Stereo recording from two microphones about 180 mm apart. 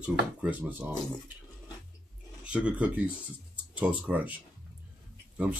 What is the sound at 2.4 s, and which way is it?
Speech, 5° right (ahead or behind).